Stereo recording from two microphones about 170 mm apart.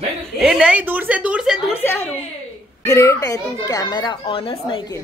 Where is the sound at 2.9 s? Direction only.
15° left (ahead or behind).